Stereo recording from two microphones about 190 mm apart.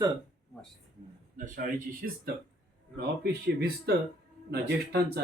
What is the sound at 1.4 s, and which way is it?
Speech, 50° right (ahead or behind).